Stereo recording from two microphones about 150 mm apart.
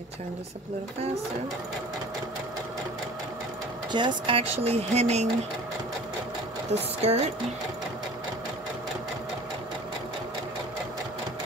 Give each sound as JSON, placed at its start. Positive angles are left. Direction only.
{"t": 3.9, "sound": "speech", "side_deg": -30}
{"t": 7.0, "sound": "speech", "side_deg": -45}